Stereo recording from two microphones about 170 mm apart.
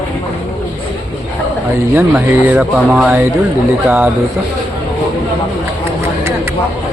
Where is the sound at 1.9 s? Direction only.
10° right (ahead or behind).